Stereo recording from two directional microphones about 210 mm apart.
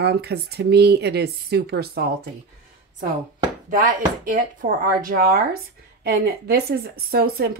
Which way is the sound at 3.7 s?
40° right (ahead or behind).